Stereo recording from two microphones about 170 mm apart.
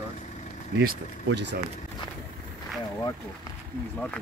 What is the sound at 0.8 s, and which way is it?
Speech, 75° right (ahead or behind).